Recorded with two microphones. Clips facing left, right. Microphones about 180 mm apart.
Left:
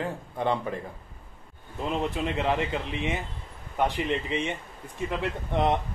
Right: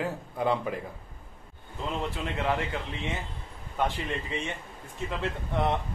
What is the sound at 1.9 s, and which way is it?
A man's voice, 20° left (ahead or behind).